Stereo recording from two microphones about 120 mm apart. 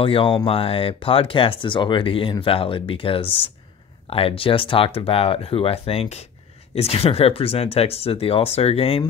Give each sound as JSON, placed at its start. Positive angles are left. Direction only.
{"t": 0.0, "sound": "speech", "side_deg": 50}